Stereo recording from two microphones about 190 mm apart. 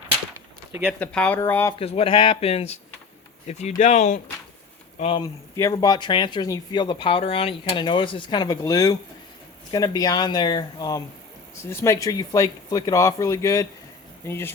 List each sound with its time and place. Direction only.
0.3 s a sound: 10° right (ahead or behind)
0.9 s speech: 5° left (ahead or behind)
1.8 s speech: 30° left (ahead or behind)
5.2 s speech: 20° left (ahead or behind)